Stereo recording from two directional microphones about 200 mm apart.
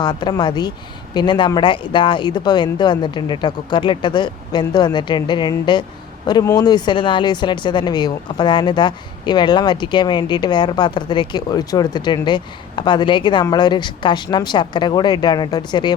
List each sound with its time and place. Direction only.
0.0 s speech: 20° left (ahead or behind)